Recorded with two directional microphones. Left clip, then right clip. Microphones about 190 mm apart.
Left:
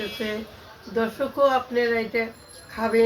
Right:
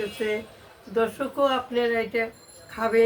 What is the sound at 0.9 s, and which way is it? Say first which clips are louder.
Speech: even; 10° right (ahead or behind).